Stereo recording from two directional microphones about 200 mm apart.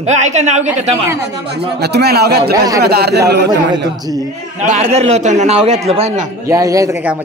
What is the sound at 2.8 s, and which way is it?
Speech, 50° right (ahead or behind).